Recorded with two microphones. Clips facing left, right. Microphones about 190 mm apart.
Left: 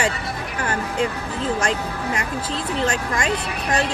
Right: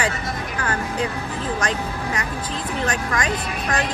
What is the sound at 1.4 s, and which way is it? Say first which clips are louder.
Speech: left 3 dB; 30° left (ahead or behind).